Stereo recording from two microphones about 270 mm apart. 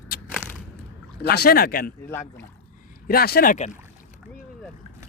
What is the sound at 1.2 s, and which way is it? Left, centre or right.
Speech, left.